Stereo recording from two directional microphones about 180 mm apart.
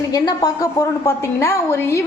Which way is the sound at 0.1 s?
20° left (ahead or behind).